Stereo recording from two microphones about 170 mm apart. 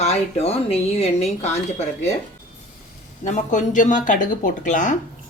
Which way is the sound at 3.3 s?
45° left (ahead or behind).